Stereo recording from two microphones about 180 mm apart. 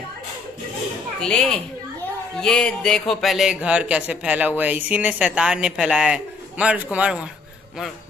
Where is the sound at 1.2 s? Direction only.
5° left (ahead or behind).